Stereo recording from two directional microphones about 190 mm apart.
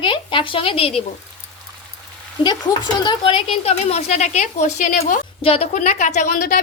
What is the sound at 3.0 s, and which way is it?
A woman's voice, 25° left (ahead or behind).